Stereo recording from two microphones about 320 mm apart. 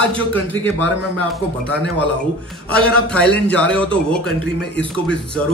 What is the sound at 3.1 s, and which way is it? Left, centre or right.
Speech, centre.